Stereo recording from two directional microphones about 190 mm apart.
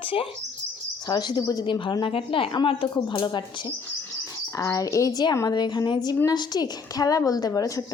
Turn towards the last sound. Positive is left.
turn(degrees=15)  # may be behind; listen again after turning